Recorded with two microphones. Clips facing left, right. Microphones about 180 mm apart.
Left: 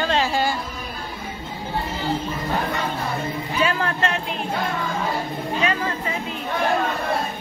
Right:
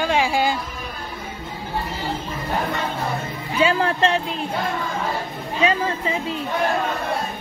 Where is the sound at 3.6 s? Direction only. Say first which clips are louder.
Right 5 dB; 30° right (ahead or behind).